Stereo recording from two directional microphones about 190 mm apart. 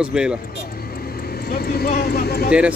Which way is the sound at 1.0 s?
55° left (ahead or behind).